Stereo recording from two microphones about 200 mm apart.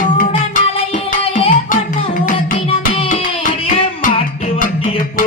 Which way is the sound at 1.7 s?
40° left (ahead or behind).